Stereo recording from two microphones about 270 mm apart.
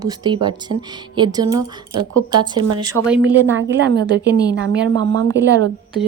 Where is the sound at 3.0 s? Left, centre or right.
Right.